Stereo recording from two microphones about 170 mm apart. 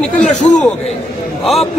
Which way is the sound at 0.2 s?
45° left (ahead or behind).